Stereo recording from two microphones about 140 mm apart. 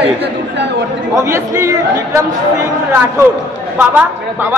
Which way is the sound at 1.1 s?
20° right (ahead or behind).